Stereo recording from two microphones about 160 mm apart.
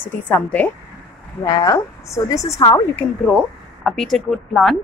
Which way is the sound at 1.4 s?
25° left (ahead or behind).